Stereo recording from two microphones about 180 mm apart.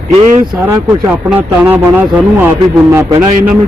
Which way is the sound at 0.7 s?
5° right (ahead or behind).